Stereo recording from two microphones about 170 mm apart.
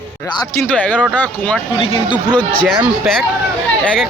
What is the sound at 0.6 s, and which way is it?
Speech, 10° left (ahead or behind).